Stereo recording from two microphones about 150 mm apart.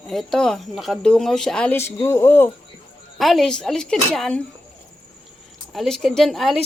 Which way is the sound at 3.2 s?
Centre (ahead or behind).